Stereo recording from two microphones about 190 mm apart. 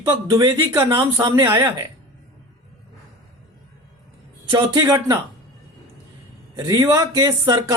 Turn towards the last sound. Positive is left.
turn(degrees=-15)  # may be behind; listen again after turning